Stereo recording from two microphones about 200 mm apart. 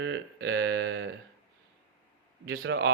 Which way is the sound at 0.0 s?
60° right (ahead or behind).